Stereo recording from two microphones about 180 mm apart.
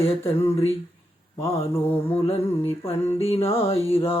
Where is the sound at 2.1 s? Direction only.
35° left (ahead or behind).